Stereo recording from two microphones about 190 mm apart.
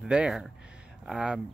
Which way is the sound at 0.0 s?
5° right (ahead or behind).